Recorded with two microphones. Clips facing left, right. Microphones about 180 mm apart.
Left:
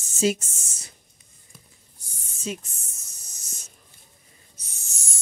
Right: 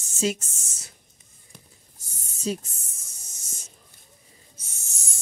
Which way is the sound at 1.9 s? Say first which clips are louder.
Right 1 dB; 35° right (ahead or behind).